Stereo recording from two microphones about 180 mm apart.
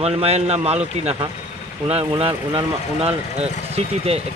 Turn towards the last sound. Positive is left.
turn(degrees=-35)  # may be behind; listen again after turning